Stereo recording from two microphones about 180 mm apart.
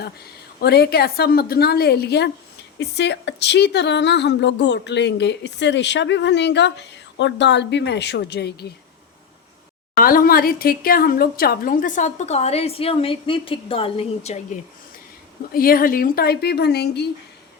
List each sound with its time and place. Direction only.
0.6 s a woman's voice: 65° left (ahead or behind)
10.0 s speech: 55° left (ahead or behind)
15.5 s a woman's voice: 55° left (ahead or behind)